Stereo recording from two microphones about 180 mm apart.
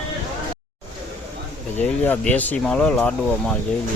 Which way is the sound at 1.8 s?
10° left (ahead or behind).